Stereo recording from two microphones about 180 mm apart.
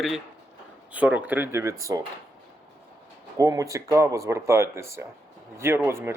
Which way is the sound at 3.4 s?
20° right (ahead or behind).